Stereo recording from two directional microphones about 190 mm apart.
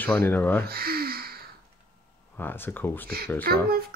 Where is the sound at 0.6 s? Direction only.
55° right (ahead or behind).